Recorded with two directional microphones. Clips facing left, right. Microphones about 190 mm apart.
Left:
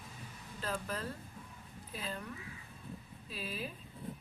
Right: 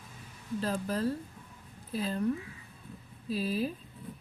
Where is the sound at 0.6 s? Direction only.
35° right (ahead or behind).